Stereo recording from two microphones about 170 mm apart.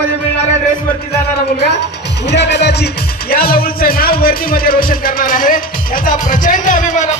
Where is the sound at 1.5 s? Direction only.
80° left.